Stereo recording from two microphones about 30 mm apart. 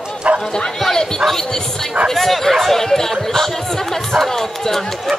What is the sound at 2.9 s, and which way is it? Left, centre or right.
Speech, centre.